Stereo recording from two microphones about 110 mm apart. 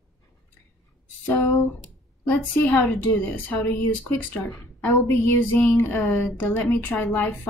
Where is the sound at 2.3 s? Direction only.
15° left (ahead or behind).